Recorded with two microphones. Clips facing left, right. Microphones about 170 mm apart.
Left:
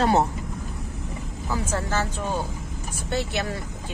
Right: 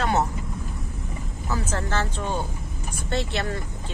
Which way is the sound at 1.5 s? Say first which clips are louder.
Left 1 dB; 10° left (ahead or behind).